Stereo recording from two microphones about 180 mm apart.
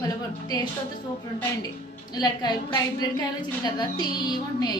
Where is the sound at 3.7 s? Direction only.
25° left (ahead or behind).